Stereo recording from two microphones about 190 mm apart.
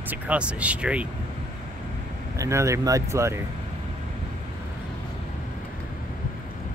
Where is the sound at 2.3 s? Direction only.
15° right (ahead or behind).